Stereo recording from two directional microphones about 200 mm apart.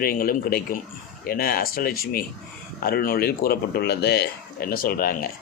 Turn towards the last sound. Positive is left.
turn(degrees=45)  # may be behind; listen again after turning